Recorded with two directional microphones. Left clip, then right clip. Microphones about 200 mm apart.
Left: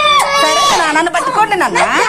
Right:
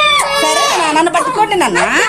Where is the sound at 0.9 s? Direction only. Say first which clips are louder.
Right 1 dB; 25° right (ahead or behind).